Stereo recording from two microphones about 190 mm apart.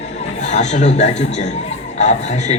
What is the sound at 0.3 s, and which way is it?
A man's voice, 40° left (ahead or behind).